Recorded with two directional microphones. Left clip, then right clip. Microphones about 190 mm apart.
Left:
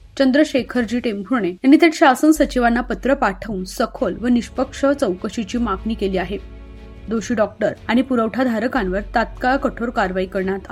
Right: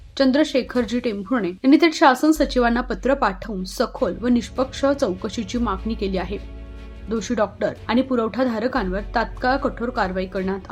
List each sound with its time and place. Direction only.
0.2 s a woman's voice: 10° left (ahead or behind)